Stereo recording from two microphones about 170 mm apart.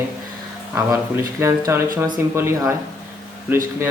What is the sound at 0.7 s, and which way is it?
Speech, 15° right (ahead or behind).